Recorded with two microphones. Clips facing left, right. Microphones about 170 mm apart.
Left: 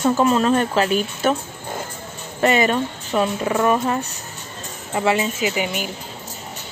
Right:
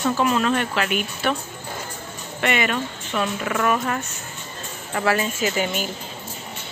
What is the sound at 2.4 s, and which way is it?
A woman's voice, 35° left (ahead or behind).